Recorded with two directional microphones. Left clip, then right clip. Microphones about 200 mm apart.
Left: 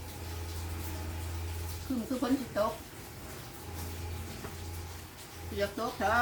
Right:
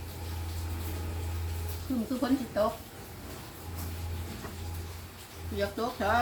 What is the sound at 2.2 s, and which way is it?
Speech, centre (ahead or behind).